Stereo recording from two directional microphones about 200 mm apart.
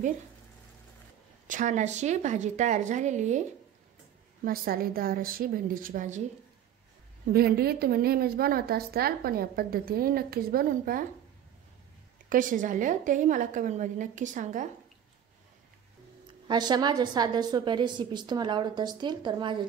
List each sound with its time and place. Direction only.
1.5 s a woman's voice: 40° right (ahead or behind)
4.5 s a woman's voice: 45° right (ahead or behind)
7.2 s a woman's voice: 50° right (ahead or behind)
12.3 s a woman's voice: 40° right (ahead or behind)
16.4 s a woman's voice: 20° right (ahead or behind)